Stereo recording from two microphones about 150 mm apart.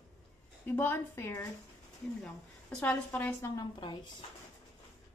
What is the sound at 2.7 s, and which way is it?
Speech, 10° left (ahead or behind).